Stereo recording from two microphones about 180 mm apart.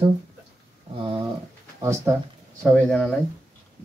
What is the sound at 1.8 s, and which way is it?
Speech, 15° right (ahead or behind).